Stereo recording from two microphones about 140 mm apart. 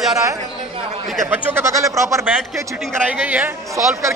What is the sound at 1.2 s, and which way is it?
A man's voice, 20° right (ahead or behind).